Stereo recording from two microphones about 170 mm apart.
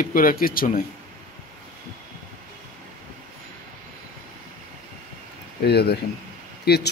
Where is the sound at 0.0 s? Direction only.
55° left (ahead or behind).